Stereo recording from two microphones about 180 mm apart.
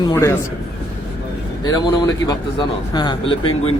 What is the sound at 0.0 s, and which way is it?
Speech, 15° left (ahead or behind).